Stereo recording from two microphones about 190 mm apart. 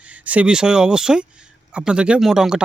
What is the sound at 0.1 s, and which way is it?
Speech, 5° right (ahead or behind).